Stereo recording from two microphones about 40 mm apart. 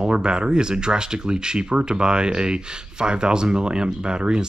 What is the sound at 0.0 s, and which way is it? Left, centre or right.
Speech, right.